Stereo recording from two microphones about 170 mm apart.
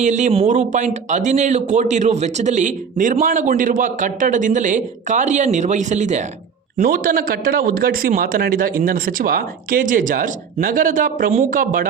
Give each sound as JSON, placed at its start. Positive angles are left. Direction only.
{"t": 0.0, "sound": "speech", "side_deg": -45}
{"t": 6.8, "sound": "a man's voice", "side_deg": -60}